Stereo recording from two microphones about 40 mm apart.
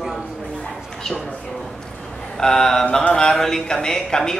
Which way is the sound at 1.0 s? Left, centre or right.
Centre.